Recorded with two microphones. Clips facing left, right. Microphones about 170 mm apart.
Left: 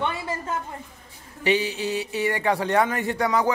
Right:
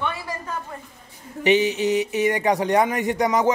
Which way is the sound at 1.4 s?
20° right (ahead or behind).